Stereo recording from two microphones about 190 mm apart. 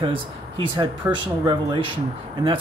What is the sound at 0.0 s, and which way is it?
Speech, 25° right (ahead or behind).